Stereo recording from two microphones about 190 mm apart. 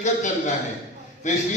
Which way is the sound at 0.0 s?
40° left (ahead or behind).